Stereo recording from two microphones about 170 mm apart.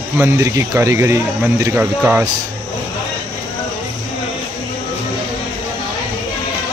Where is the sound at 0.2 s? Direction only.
15° right (ahead or behind).